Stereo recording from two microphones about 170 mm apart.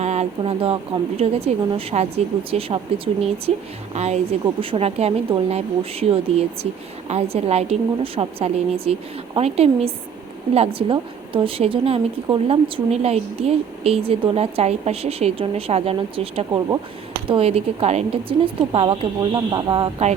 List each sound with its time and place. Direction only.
0.0 s a woman's voice: 40° right (ahead or behind)